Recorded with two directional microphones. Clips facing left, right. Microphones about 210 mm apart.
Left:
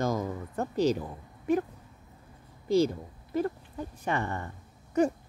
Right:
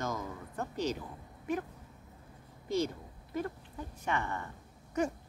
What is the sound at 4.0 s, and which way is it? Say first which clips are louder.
Speech: left 4 dB; 35° left (ahead or behind).